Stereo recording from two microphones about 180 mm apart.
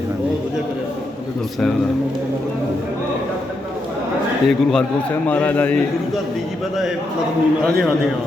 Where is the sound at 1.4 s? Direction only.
Centre (ahead or behind).